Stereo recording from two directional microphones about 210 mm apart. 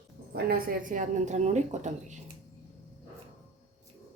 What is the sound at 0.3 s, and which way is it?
A woman's voice, 50° right (ahead or behind).